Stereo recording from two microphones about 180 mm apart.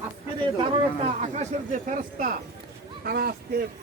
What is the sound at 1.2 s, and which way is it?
A man's voice, 40° right (ahead or behind).